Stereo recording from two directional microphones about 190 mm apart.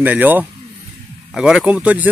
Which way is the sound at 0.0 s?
10° right (ahead or behind).